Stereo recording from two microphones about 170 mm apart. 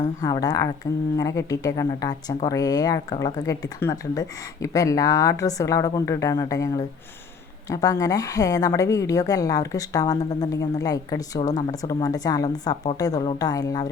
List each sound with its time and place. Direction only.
0.2 s speech: 20° left (ahead or behind)